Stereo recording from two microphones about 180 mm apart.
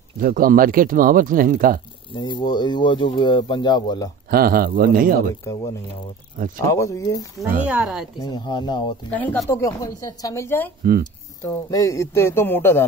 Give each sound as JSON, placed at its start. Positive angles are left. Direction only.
{"t": 0.2, "sound": "speech", "side_deg": -50}
{"t": 2.1, "sound": "speech", "side_deg": 25}
{"t": 4.3, "sound": "speech", "side_deg": -55}
{"t": 6.3, "sound": "speech", "side_deg": -50}
{"t": 6.7, "sound": "speech", "side_deg": 15}
{"t": 7.6, "sound": "speech", "side_deg": -5}
{"t": 8.2, "sound": "speech", "side_deg": 25}
{"t": 9.1, "sound": "speech", "side_deg": 10}
{"t": 10.8, "sound": "speech", "side_deg": -60}
{"t": 11.4, "sound": "speech", "side_deg": 15}